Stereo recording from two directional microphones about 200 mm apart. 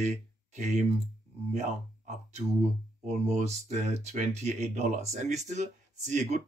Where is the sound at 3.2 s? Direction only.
35° right (ahead or behind).